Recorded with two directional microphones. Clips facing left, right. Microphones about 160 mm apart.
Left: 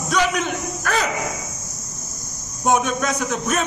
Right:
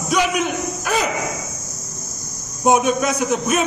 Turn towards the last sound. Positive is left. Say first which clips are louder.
# right 4 dB
turn(degrees=-10)  # may be behind; listen again after turning